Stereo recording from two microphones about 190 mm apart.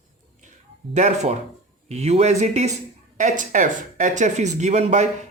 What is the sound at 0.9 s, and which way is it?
Speech, 40° right (ahead or behind).